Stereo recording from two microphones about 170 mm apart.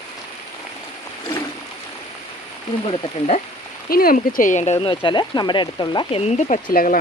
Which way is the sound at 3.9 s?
60° left (ahead or behind).